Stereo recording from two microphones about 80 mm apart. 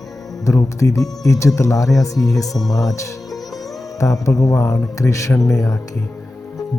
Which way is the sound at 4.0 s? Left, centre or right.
Left.